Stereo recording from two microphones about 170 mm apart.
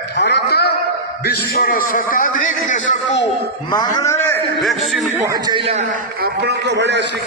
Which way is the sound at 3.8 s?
15° left (ahead or behind).